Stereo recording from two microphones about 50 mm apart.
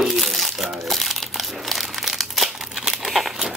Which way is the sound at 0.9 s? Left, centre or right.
Centre.